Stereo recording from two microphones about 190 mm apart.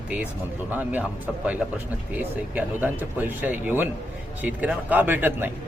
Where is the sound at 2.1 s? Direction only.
10° right (ahead or behind).